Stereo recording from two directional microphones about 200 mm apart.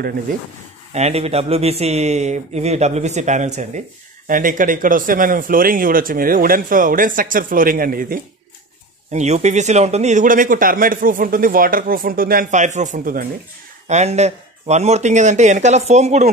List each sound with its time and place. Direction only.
0.9 s speech: 30° right (ahead or behind)
9.1 s speech: 35° right (ahead or behind)